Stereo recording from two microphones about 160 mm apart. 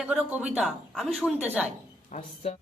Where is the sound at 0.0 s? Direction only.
10° right (ahead or behind).